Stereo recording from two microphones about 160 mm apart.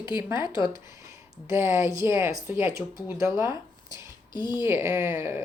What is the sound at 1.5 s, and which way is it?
Speech, 15° right (ahead or behind).